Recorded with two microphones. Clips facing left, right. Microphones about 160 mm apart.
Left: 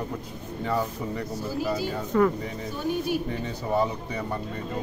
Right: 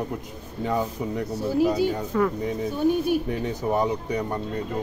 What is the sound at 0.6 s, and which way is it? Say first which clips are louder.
Speech: right 2 dB; 15° right (ahead or behind).